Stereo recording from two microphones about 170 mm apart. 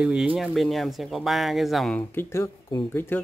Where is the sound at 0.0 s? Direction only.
5° right (ahead or behind).